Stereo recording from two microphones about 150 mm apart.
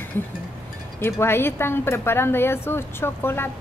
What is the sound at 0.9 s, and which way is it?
A woman's voice, 15° left (ahead or behind).